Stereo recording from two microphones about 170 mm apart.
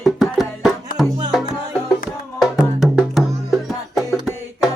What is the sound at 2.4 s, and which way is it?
Music, centre (ahead or behind).